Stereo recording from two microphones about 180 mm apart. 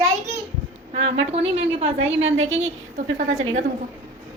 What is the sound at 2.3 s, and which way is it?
Speech, 90° right.